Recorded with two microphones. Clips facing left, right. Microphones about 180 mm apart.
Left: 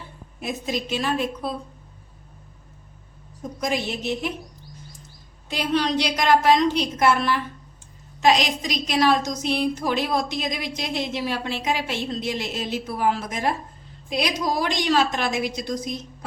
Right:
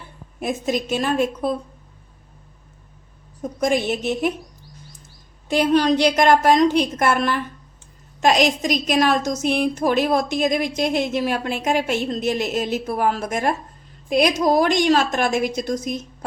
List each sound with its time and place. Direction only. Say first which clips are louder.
0.3 s a woman's voice: right 5 dB; 50° right (ahead or behind)
3.6 s a woman's voice: right 6 dB; 50° right (ahead or behind)
5.5 s a woman's voice: right 6 dB; 50° right (ahead or behind)